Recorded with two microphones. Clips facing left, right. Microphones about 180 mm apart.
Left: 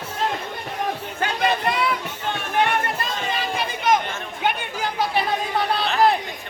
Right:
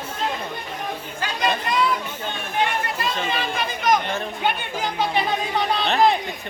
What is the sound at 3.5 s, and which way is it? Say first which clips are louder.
Chatter: even; 25° left (ahead or behind).